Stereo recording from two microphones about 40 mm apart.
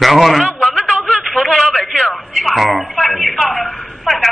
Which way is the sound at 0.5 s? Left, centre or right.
Left.